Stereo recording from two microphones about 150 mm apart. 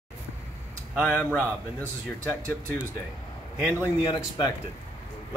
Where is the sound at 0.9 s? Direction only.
5° left (ahead or behind).